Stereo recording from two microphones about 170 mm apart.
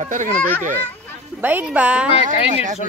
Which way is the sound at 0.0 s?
45° right (ahead or behind).